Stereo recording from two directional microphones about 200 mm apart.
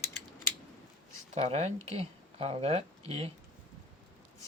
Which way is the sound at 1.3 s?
35° right (ahead or behind).